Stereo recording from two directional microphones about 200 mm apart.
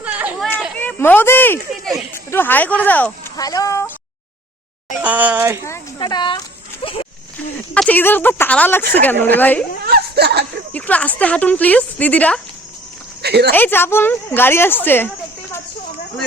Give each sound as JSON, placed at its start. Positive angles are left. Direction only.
{"t": 0.0, "sound": "a sound", "side_deg": -5}
{"t": 0.8, "sound": "a sound", "side_deg": 10}
{"t": 2.1, "sound": "speech", "side_deg": 10}
{"t": 5.0, "sound": "speech", "side_deg": -10}
{"t": 5.6, "sound": "speech", "side_deg": 15}
{"t": 6.8, "sound": "a sound", "side_deg": 25}
{"t": 7.7, "sound": "speech", "side_deg": 5}
{"t": 9.8, "sound": "speech", "side_deg": -55}
{"t": 10.7, "sound": "speech", "side_deg": 5}
{"t": 13.2, "sound": "speech", "side_deg": -55}
{"t": 13.5, "sound": "speech", "side_deg": 10}